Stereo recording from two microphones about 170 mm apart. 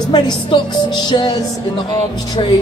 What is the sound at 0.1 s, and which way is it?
A woman's voice, 25° left (ahead or behind).